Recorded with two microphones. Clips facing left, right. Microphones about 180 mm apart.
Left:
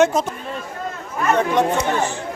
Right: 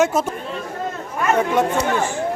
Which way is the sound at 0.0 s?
5° right (ahead or behind).